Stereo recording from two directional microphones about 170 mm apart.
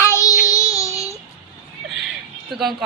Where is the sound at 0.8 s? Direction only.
20° left (ahead or behind).